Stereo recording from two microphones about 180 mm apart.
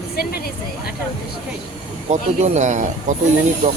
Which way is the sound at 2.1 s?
40° right (ahead or behind).